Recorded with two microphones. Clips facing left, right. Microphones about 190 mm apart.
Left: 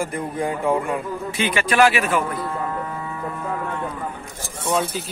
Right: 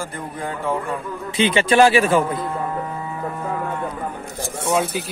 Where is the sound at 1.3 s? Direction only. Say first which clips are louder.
Right 6 dB; 25° right (ahead or behind).